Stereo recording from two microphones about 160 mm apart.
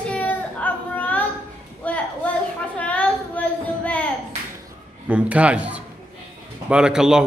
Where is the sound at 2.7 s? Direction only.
10° left (ahead or behind).